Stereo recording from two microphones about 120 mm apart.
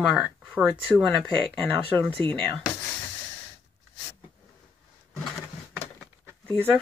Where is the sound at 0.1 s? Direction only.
10° right (ahead or behind).